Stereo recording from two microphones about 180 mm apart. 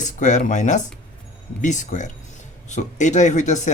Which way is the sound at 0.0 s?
45° left (ahead or behind).